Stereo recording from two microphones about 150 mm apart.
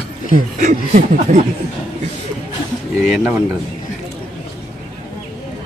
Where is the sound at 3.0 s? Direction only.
5° right (ahead or behind).